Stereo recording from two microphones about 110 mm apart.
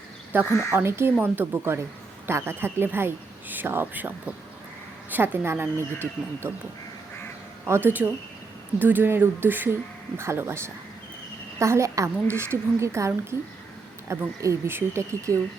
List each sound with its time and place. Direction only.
0.3 s a woman's voice: 20° right (ahead or behind)
5.1 s a woman's voice: 20° right (ahead or behind)
7.7 s a woman's voice: 20° right (ahead or behind)